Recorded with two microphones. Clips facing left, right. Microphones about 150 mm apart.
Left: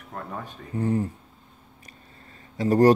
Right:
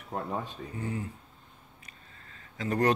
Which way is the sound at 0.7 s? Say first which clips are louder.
Left 11 dB; 40° left (ahead or behind).